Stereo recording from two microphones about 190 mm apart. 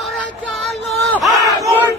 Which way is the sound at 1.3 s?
15° right (ahead or behind).